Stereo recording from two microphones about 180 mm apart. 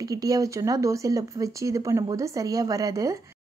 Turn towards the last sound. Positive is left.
turn(degrees=-15)  # may be behind; listen again after turning